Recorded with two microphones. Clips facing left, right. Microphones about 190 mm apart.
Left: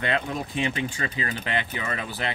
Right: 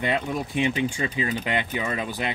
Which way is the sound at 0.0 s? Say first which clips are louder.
Right 2 dB; 15° right (ahead or behind).